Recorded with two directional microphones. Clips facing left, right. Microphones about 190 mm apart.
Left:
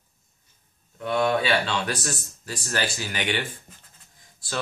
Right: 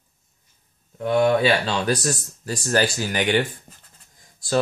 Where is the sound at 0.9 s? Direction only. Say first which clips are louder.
Right 5 dB; 40° right (ahead or behind).